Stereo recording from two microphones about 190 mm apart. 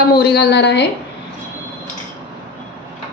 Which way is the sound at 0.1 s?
55° left (ahead or behind).